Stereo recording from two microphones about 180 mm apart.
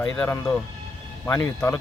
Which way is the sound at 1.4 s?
15° left (ahead or behind).